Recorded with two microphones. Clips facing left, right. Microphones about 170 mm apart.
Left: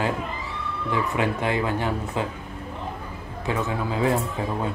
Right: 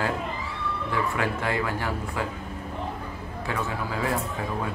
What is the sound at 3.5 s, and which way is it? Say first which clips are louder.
Speech: left 4 dB; 20° left (ahead or behind).